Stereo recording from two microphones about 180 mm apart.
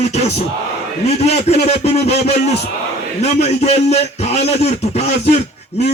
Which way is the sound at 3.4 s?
35° left (ahead or behind).